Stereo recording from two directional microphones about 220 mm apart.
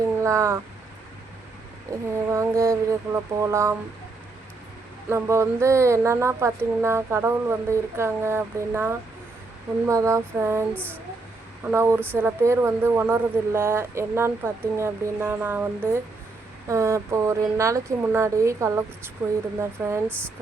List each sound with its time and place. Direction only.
0.0 s a sound: 15° right (ahead or behind)
2.3 s speech: 15° right (ahead or behind)
5.0 s speech: 10° right (ahead or behind)
20.1 s speech: 5° left (ahead or behind)